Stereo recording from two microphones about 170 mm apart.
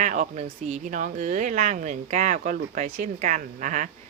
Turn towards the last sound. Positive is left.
turn(degrees=-45)  # may be behind; listen again after turning